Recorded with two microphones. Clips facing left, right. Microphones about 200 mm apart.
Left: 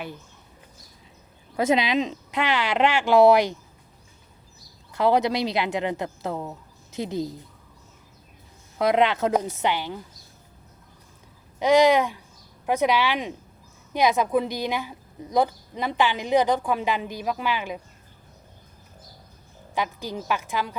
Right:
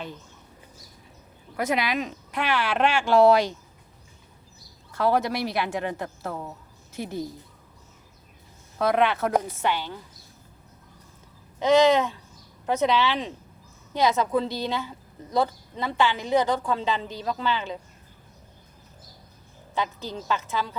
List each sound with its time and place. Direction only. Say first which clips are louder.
1.5 s speech: left 4 dB; 25° left (ahead or behind)
4.9 s a woman's voice: left 3 dB; 15° left (ahead or behind)
8.8 s a woman's voice: left 2 dB; 15° left (ahead or behind)
11.6 s a woman's voice: left 1 dB; 15° left (ahead or behind)
19.7 s a woman's voice: left 1 dB; 15° left (ahead or behind)